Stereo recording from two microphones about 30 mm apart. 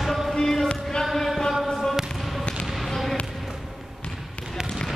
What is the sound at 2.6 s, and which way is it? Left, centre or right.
Basketball bounce, centre.